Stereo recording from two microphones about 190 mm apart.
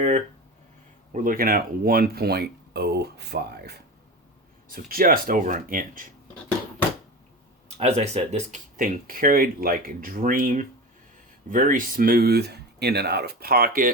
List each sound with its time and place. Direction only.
1.1 s speech: 45° right (ahead or behind)
7.8 s speech: 35° right (ahead or behind)